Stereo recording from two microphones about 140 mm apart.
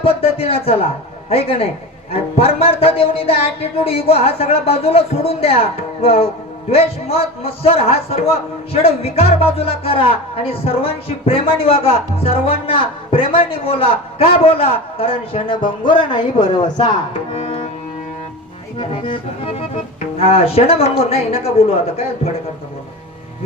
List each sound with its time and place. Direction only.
0.0 s a man's voice: 45° left (ahead or behind)
17.3 s music: 40° left (ahead or behind)
18.8 s a man's voice: 40° left (ahead or behind)